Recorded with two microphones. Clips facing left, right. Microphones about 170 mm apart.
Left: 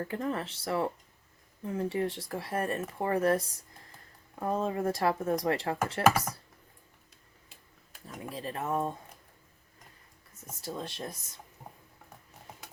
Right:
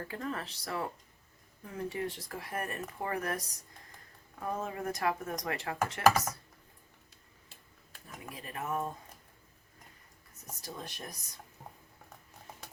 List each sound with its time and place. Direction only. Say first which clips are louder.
0.0 s speech: left 5 dB; 25° left (ahead or behind)
8.0 s speech: left 7 dB; 30° left (ahead or behind)
10.7 s speech: left 6 dB; 25° left (ahead or behind)